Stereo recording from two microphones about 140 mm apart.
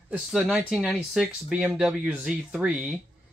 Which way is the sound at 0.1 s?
Centre (ahead or behind).